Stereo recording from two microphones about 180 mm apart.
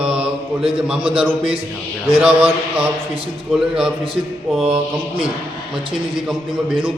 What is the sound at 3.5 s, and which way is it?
Speech, 5° right (ahead or behind).